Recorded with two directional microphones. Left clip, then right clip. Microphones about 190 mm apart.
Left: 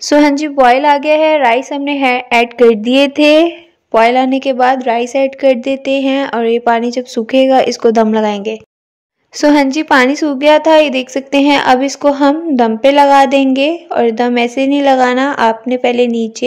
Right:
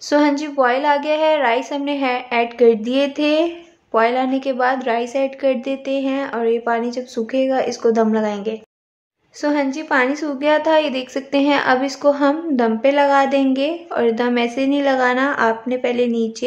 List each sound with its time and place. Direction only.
0.0 s a woman's voice: 40° left (ahead or behind)